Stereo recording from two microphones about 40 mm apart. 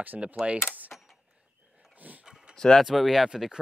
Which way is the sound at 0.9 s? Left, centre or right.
Left.